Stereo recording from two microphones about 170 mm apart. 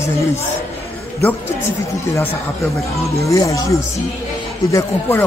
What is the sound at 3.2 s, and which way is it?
Speech, 20° left (ahead or behind).